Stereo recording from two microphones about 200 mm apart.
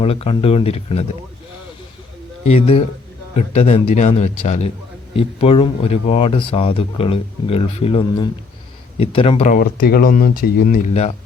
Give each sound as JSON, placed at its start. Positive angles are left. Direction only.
{"t": 0.0, "sound": "speech", "side_deg": 30}
{"t": 2.5, "sound": "a man's voice", "side_deg": 30}
{"t": 9.6, "sound": "speech", "side_deg": 50}